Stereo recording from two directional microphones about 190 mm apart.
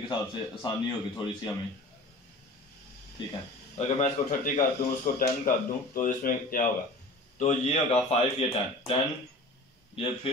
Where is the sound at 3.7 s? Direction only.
35° left (ahead or behind).